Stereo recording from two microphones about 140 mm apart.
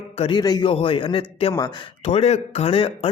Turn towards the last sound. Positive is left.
turn(degrees=40)  # may be behind; listen again after turning